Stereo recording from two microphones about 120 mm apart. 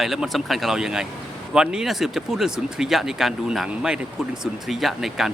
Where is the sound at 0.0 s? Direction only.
Centre (ahead or behind).